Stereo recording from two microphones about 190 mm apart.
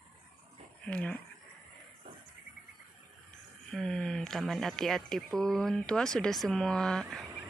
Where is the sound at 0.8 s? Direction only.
5° left (ahead or behind).